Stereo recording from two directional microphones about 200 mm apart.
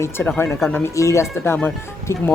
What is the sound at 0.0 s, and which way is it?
Speech, 10° left (ahead or behind).